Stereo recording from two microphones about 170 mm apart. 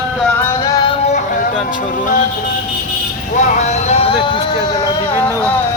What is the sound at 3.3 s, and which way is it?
Music, 40° left (ahead or behind).